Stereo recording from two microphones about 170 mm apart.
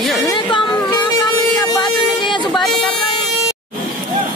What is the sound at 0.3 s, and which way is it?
Chatter, 25° left (ahead or behind).